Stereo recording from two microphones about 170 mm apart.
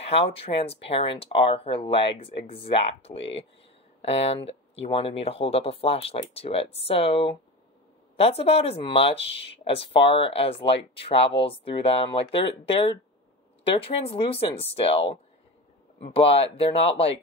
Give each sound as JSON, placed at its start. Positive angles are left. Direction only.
{"t": 0.0, "sound": "speech", "side_deg": 35}